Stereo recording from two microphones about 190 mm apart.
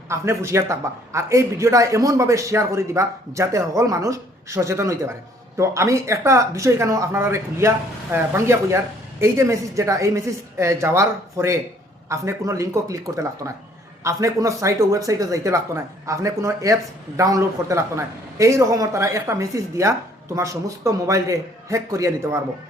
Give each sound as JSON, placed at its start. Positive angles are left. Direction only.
{"t": 0.1, "sound": "a man's voice", "side_deg": -15}